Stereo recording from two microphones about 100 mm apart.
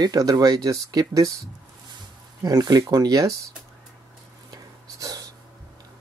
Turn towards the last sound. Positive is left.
turn(degrees=-40)  # may be behind; listen again after turning